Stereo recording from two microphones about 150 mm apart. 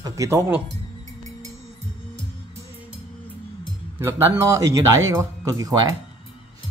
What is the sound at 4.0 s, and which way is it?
Speech, 15° right (ahead or behind).